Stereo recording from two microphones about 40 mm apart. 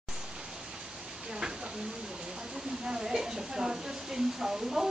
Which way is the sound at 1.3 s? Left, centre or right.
Centre.